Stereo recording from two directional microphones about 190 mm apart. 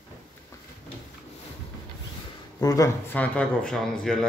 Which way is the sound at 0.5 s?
15° left (ahead or behind).